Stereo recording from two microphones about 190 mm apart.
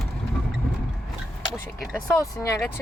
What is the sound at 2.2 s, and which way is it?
Speech, 15° left (ahead or behind).